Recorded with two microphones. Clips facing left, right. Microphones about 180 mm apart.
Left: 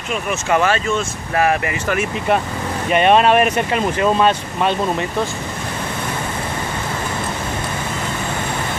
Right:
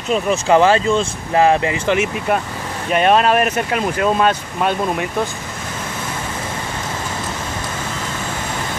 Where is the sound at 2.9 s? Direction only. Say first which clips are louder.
Left 1 dB; centre (ahead or behind).